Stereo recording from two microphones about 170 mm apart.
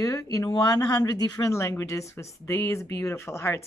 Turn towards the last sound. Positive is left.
turn(degrees=15)  # may be behind; listen again after turning